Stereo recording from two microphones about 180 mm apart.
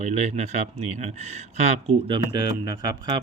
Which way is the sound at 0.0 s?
35° right (ahead or behind).